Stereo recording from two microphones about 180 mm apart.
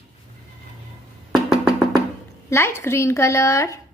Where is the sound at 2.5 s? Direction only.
15° left (ahead or behind).